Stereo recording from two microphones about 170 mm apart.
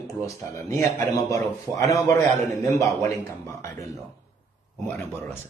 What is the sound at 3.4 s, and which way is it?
Speech, 20° left (ahead or behind).